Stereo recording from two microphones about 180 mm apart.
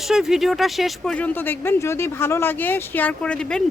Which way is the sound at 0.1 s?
Centre (ahead or behind).